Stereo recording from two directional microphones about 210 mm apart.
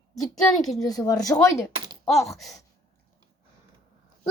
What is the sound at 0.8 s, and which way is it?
Speech, 15° left (ahead or behind).